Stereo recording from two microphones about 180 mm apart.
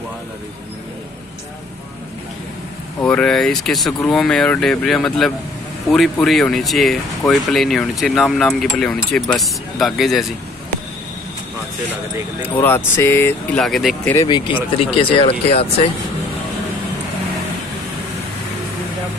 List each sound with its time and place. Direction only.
3.0 s speech: 5° left (ahead or behind)
12.4 s speech: 10° left (ahead or behind)
14.0 s speech: 20° left (ahead or behind)